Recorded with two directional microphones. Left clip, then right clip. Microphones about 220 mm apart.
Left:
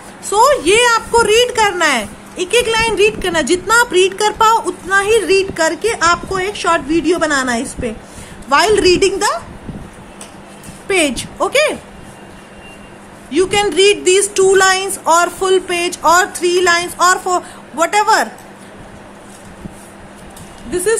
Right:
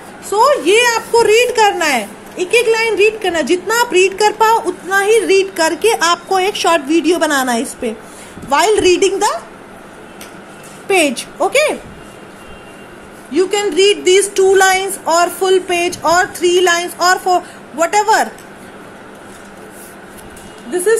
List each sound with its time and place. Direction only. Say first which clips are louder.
0.3 s speech: even; 15° left (ahead or behind)
10.9 s speech: right 2 dB; 5° left (ahead or behind)
13.3 s speech: left 1 dB; 10° left (ahead or behind)
20.7 s speech: right 2 dB; 15° left (ahead or behind)